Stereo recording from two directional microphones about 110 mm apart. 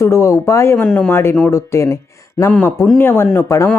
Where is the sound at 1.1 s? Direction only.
25° left (ahead or behind).